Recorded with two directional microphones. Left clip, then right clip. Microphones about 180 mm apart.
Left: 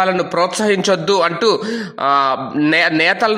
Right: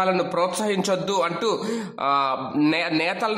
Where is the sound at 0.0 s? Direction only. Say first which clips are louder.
Left 6 dB; 20° left (ahead or behind).